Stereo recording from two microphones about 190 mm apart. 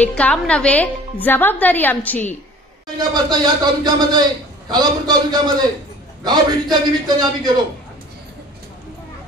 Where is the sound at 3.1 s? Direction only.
20° right (ahead or behind).